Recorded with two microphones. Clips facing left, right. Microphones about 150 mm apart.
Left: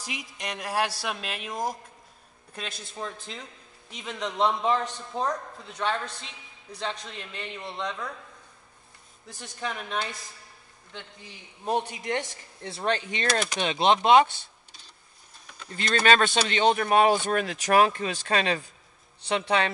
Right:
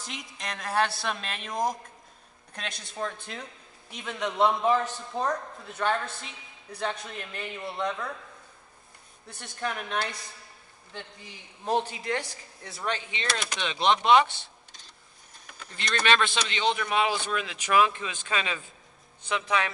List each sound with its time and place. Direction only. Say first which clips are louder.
0.0 s a man's voice: left 2 dB; 5° left (ahead or behind)
9.3 s a man's voice: right 1 dB; centre (ahead or behind)
11.6 s speech: even; 15° left (ahead or behind); by 14.4 s 45° left (ahead or behind)
15.7 s a man's voice: left 4 dB; 45° left (ahead or behind)